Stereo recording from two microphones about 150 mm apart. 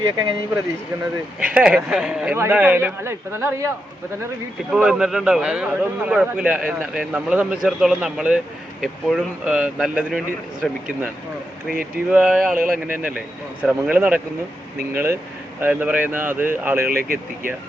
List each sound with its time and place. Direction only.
1.4 s a man's voice: 10° right (ahead or behind)
4.7 s a man's voice: 5° right (ahead or behind)
12.1 s speech: 5° right (ahead or behind)
12.5 s speech: 70° right (ahead or behind)
13.0 s a man's voice: 10° right (ahead or behind)
16.9 s speech: 75° right (ahead or behind)